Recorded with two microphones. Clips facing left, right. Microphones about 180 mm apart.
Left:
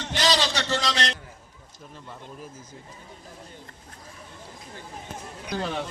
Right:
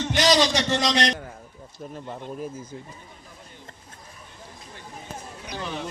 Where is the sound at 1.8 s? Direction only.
50° right (ahead or behind).